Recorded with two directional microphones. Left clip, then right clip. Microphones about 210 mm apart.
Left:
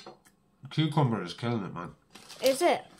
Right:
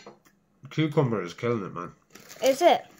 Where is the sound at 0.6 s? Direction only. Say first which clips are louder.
Right 3 dB; 20° left (ahead or behind).